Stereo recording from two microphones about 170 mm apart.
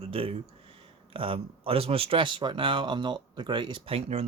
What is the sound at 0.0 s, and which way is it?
Speech, 35° right (ahead or behind).